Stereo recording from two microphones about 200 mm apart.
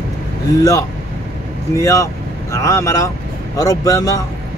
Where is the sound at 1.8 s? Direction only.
15° left (ahead or behind).